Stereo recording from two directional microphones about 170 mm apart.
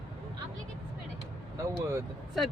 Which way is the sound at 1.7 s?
15° right (ahead or behind).